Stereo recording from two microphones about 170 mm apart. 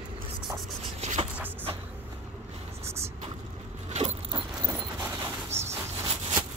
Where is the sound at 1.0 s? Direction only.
40° right (ahead or behind).